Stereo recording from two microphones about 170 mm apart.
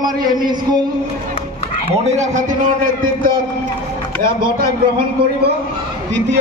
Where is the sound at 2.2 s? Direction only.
45° right (ahead or behind).